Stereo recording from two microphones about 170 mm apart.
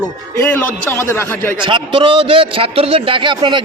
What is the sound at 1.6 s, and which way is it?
A man's voice, 30° right (ahead or behind).